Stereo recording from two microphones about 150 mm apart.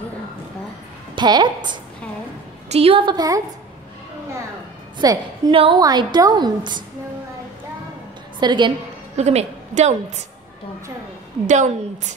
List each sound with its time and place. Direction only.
1.1 s a woman's voice: 30° right (ahead or behind)
4.9 s a woman's voice: 25° right (ahead or behind)
5.5 s a woman's voice: 35° right (ahead or behind)
8.4 s a woman's voice: 30° right (ahead or behind)
9.1 s a woman's voice: 45° right (ahead or behind)
11.4 s a woman's voice: 55° right (ahead or behind)